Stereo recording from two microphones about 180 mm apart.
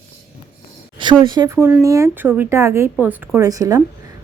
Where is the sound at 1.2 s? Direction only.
20° right (ahead or behind).